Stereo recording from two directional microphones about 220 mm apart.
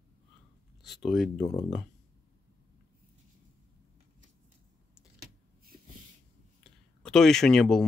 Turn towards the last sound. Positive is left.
turn(degrees=5)  # may be behind; listen again after turning